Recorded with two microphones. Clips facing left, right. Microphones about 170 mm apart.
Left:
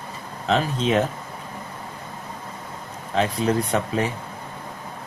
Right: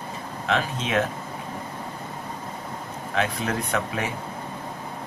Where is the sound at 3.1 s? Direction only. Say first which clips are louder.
Left 5 dB; 30° left (ahead or behind).